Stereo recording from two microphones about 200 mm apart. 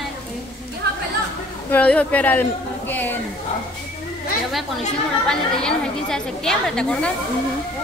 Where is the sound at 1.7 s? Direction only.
5° left (ahead or behind).